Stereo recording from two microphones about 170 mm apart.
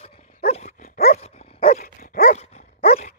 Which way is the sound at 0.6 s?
55° left (ahead or behind).